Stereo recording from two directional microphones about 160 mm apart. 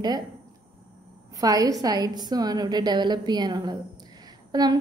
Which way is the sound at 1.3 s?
20° right (ahead or behind).